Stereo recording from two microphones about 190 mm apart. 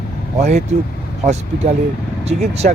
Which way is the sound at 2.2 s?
35° right (ahead or behind).